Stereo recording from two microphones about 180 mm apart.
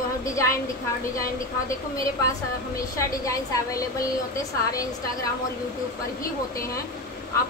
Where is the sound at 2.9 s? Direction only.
15° left (ahead or behind).